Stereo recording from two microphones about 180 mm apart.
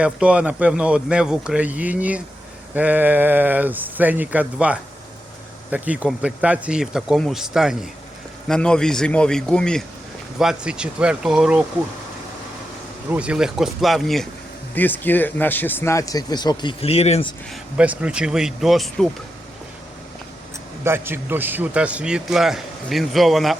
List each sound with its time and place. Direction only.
0.0 s a man's voice: 5° right (ahead or behind)
13.1 s a man's voice: 5° right (ahead or behind); by 17.3 s 35° left (ahead or behind)
17.5 s a man's voice: 5° right (ahead or behind)
20.8 s a man's voice: 10° right (ahead or behind)